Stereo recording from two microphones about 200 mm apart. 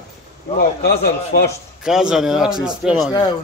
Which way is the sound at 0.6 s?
50° left (ahead or behind).